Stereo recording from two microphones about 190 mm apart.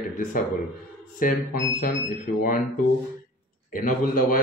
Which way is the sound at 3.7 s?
45° left (ahead or behind).